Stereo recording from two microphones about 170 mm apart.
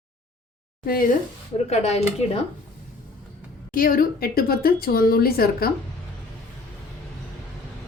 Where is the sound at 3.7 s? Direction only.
55° left (ahead or behind).